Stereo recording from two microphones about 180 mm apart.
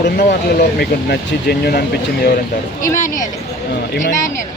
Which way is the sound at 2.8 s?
45° left (ahead or behind).